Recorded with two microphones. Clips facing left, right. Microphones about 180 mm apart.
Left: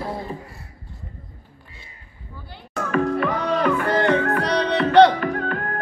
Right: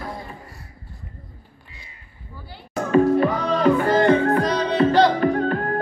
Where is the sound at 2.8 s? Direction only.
25° right (ahead or behind).